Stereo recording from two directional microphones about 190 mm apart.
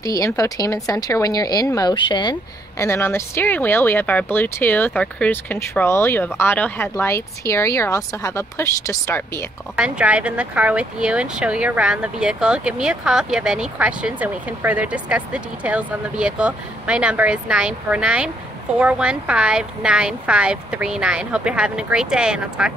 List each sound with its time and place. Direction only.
0.0 s speech: 20° left (ahead or behind)
2.8 s speech: 15° left (ahead or behind)
9.8 s speech: 5° right (ahead or behind)